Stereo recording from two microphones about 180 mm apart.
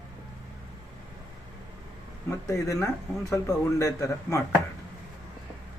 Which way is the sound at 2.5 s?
15° left (ahead or behind).